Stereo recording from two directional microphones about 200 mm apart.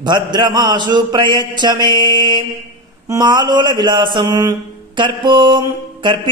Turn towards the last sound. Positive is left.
turn(degrees=-20)  # may be behind; listen again after turning